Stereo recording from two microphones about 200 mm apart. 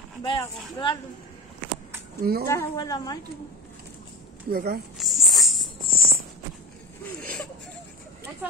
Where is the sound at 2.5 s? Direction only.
15° left (ahead or behind).